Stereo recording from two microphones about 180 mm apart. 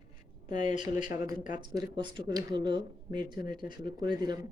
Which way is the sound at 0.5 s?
25° right (ahead or behind).